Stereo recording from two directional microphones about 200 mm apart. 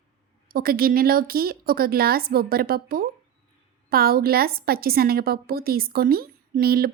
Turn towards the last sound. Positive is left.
turn(degrees=-50)  # may be behind; listen again after turning